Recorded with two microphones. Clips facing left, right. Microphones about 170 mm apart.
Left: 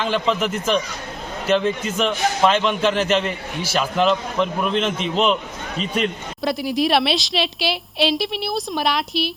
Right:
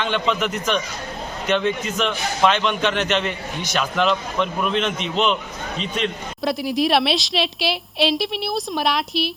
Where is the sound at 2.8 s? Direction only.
35° left (ahead or behind).